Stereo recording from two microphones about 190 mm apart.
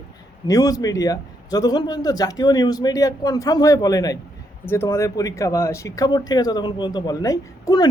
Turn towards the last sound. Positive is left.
turn(degrees=20)  # may be behind; listen again after turning